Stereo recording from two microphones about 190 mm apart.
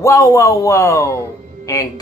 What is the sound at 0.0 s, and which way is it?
Speech, 15° left (ahead or behind).